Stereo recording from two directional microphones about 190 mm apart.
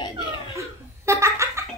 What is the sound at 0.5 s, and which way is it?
Laughter, 15° right (ahead or behind).